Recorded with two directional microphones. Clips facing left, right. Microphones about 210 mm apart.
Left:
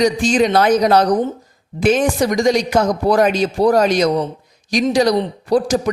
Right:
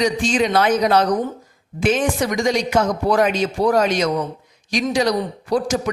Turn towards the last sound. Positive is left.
turn(degrees=35)  # may be behind; listen again after turning